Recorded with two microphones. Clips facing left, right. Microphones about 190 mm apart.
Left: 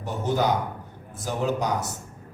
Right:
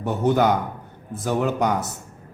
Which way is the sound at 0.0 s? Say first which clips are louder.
Right 5 dB; 60° right (ahead or behind).